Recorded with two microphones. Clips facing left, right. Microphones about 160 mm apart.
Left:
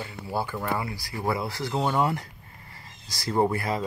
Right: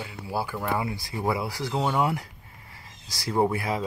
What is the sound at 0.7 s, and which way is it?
Speech, 20° right (ahead or behind).